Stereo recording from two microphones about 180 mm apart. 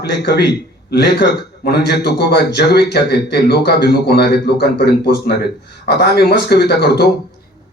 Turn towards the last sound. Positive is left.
turn(degrees=65)  # may be behind; listen again after turning